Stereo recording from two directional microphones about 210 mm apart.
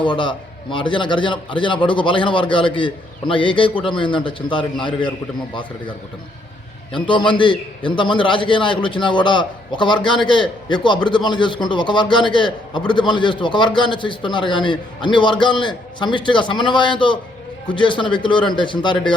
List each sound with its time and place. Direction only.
0.0 s a man's voice: 25° left (ahead or behind)
6.9 s a man's voice: 25° left (ahead or behind)